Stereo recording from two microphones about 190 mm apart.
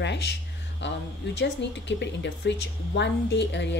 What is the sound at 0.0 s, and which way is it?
A woman's voice, 65° left (ahead or behind).